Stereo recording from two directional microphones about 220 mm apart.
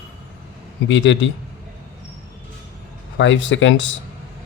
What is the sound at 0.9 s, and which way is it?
Speech, 60° left (ahead or behind).